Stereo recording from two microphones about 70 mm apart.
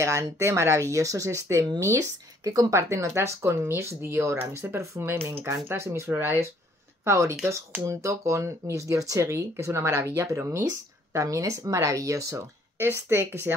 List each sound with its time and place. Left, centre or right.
0.0 s speech: right
7.1 s speech: right
11.1 s speech: right
12.7 s speech: right